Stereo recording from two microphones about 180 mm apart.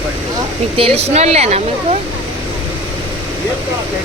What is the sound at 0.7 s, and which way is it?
Speech, 35° right (ahead or behind).